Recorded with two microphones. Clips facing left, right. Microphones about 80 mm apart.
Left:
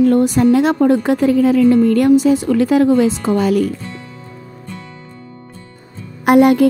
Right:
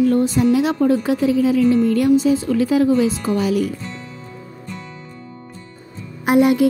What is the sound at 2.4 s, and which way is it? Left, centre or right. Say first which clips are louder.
Speech: left 4 dB; left.